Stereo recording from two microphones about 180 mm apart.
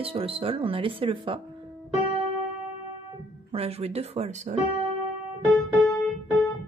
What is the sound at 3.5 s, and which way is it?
Speech, 35° right (ahead or behind).